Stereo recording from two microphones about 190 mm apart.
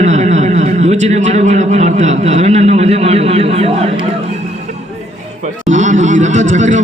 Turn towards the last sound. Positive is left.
turn(degrees=-40)  # may be behind; listen again after turning